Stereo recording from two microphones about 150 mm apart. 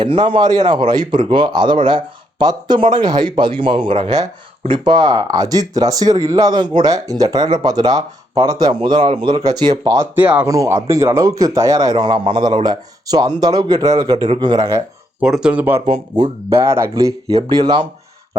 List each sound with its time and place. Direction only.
0.0 s speech: 30° right (ahead or behind)
15.2 s speech: 5° right (ahead or behind)
15.9 s speech: 35° right (ahead or behind)
16.6 s speech: 15° right (ahead or behind)